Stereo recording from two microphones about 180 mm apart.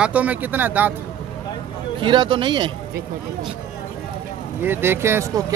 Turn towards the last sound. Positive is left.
turn(degrees=-15)  # may be behind; listen again after turning